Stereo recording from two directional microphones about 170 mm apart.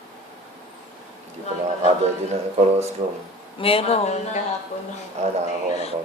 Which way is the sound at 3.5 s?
35° left (ahead or behind).